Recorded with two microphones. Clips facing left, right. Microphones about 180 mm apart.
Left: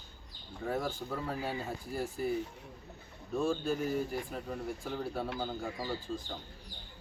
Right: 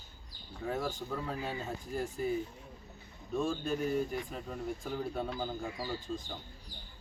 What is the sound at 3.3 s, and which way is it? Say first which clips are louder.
Speech: left 1 dB; 5° left (ahead or behind).